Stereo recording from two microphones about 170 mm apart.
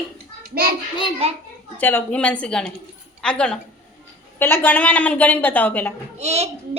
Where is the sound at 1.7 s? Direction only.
10° left (ahead or behind).